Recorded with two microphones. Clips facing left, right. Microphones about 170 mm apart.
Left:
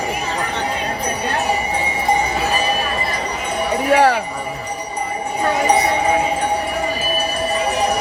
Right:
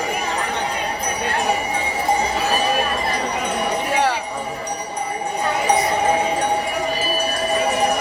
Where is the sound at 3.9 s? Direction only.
65° left (ahead or behind).